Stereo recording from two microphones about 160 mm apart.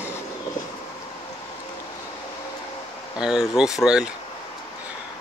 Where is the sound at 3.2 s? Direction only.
5° right (ahead or behind).